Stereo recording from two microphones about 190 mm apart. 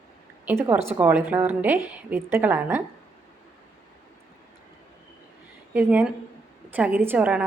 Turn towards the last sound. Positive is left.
turn(degrees=-5)  # may be behind; listen again after turning